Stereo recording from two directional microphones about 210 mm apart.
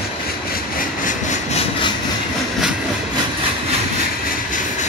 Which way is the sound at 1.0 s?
30° left (ahead or behind).